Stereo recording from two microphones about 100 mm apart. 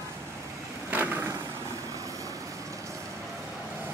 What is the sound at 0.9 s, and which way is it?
Vehicle, 20° right (ahead or behind).